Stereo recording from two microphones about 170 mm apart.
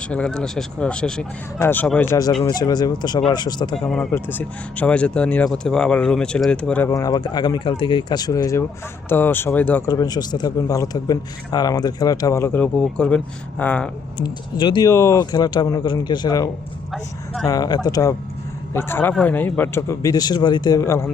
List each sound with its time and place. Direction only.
0.0 s speech: 5° left (ahead or behind); by 3.8 s 25° left (ahead or behind)
3.8 s speech: centre (ahead or behind)
6.8 s speech: 20° left (ahead or behind)
9.9 s speech: 20° left (ahead or behind)
14.5 s speech: 25° left (ahead or behind)